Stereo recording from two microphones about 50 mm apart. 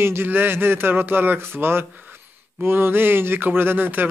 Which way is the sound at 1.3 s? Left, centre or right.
Right.